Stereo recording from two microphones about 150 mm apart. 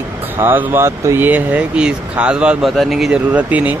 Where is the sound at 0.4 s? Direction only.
15° right (ahead or behind).